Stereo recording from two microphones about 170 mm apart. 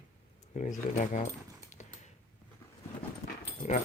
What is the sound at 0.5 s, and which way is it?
Speech, 45° left (ahead or behind).